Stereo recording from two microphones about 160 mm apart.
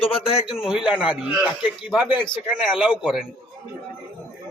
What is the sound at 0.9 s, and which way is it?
Speech, 30° left (ahead or behind).